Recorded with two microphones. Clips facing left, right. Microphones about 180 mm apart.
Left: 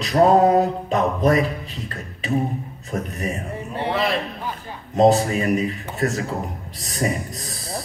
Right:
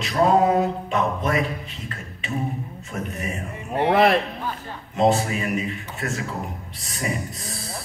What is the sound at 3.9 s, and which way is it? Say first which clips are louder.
Speech: right 5 dB; 60° right (ahead or behind).